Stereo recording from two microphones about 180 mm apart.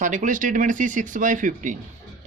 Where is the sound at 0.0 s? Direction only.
45° right (ahead or behind).